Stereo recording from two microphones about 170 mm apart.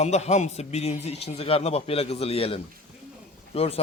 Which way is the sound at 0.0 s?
40° left (ahead or behind).